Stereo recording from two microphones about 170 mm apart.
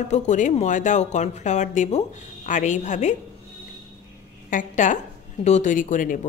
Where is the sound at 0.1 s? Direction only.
45° left (ahead or behind).